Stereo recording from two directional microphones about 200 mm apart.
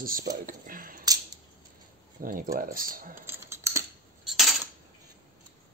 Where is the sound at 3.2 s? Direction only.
15° right (ahead or behind).